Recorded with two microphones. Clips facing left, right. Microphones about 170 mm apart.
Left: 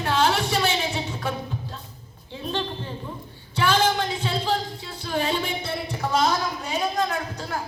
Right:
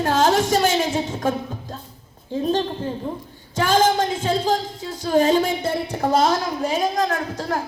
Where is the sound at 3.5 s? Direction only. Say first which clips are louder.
Right 4 dB; 45° right (ahead or behind).